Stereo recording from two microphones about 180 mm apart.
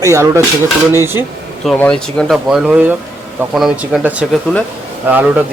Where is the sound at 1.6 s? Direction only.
5° left (ahead or behind).